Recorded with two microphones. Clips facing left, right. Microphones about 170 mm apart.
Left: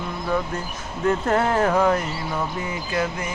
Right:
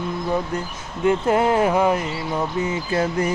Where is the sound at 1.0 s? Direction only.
10° right (ahead or behind).